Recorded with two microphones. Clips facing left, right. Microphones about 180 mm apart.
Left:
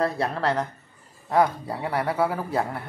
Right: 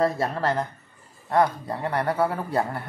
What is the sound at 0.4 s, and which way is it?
Speech, centre (ahead or behind).